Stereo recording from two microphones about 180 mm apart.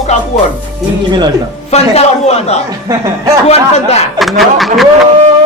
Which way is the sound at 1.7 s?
35° left (ahead or behind).